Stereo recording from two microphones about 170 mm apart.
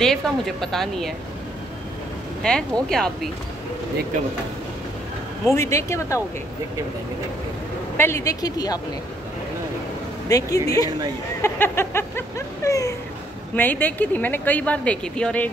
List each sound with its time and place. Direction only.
0.0 s speech: 5° left (ahead or behind)
2.4 s speech: 5° left (ahead or behind)
5.5 s speech: 15° left (ahead or behind)
8.0 s speech: 15° left (ahead or behind)
10.2 s speech: 20° left (ahead or behind)
11.4 s a sound: 15° left (ahead or behind)
13.6 s speech: 10° left (ahead or behind)